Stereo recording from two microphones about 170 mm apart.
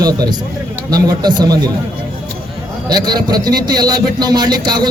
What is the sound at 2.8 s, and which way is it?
A man's voice, 25° right (ahead or behind).